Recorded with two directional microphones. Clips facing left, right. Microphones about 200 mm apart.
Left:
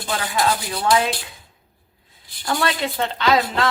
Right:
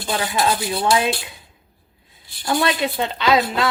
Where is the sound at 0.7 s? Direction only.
20° right (ahead or behind).